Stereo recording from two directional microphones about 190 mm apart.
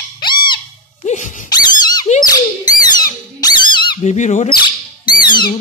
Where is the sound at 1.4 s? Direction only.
20° left (ahead or behind).